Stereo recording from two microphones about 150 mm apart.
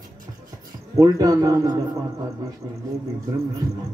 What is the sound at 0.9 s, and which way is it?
Speech, 25° right (ahead or behind).